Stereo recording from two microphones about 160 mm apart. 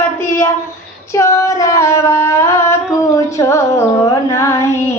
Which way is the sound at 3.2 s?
20° left (ahead or behind).